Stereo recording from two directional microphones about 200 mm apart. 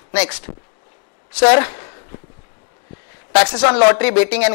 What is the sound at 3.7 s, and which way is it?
Speech, 10° left (ahead or behind).